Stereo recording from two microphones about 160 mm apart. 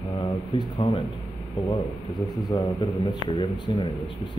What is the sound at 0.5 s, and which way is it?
Speech, 30° left (ahead or behind).